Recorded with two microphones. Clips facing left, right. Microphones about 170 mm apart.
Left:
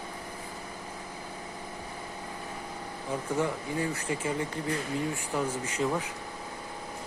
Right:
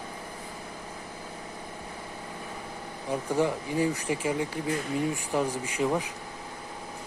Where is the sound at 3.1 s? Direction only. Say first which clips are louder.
Right 3 dB; 20° right (ahead or behind).